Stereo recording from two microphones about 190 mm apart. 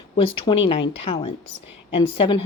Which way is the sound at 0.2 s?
25° left (ahead or behind).